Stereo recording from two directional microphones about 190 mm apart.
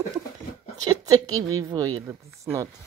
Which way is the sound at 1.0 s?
20° right (ahead or behind).